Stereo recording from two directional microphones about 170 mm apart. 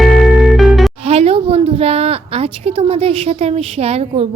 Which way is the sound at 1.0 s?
35° right (ahead or behind).